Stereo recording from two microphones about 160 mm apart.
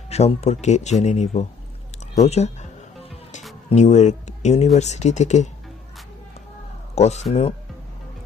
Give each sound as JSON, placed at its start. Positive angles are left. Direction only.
{"t": 0.1, "sound": "speech", "side_deg": 40}
{"t": 2.1, "sound": "music", "side_deg": 40}
{"t": 3.7, "sound": "speech", "side_deg": 45}
{"t": 6.9, "sound": "speech", "side_deg": 45}